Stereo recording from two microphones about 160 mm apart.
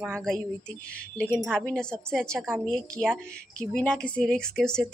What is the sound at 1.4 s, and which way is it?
Speech, 5° right (ahead or behind).